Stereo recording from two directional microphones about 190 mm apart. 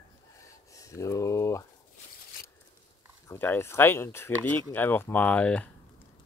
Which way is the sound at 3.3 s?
10° left (ahead or behind).